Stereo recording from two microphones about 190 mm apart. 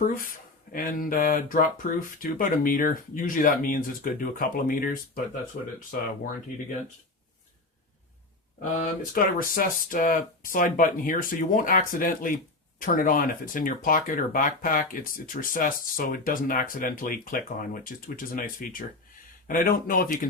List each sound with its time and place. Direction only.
0.0 s speech: 50° left (ahead or behind)
8.8 s speech: 50° left (ahead or behind)